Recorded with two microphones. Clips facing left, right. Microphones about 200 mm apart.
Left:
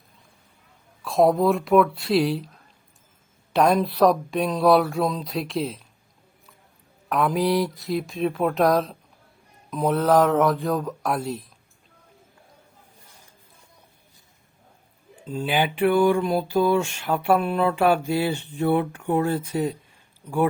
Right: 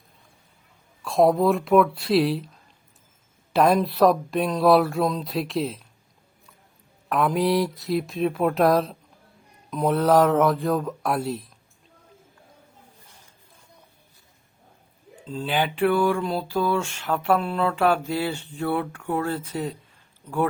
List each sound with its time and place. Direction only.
1.0 s speech: centre (ahead or behind)
3.5 s speech: centre (ahead or behind)
7.1 s speech: centre (ahead or behind)
15.3 s a sound: 10° left (ahead or behind)